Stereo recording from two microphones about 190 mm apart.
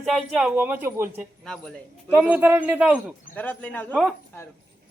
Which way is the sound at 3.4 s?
10° left (ahead or behind).